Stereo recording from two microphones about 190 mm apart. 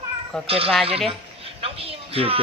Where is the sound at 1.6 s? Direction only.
30° right (ahead or behind).